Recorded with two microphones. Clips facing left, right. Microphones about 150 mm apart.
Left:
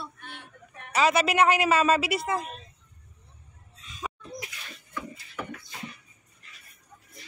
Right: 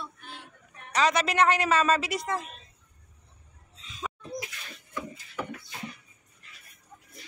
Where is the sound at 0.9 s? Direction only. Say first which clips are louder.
Left 2 dB; 5° left (ahead or behind).